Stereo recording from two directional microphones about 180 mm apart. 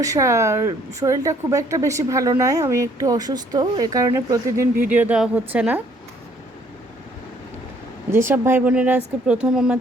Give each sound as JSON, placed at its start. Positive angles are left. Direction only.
{"t": 0.0, "sound": "speech", "side_deg": -15}
{"t": 8.1, "sound": "speech", "side_deg": -15}